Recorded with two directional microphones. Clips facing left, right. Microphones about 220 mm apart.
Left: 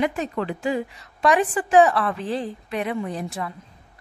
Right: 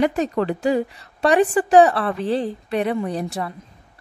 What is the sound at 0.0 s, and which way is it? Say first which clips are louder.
A woman's voice: right 5 dB; 40° right (ahead or behind).